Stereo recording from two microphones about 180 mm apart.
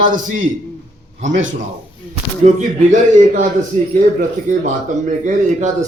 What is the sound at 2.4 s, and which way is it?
Speech, 45° right (ahead or behind).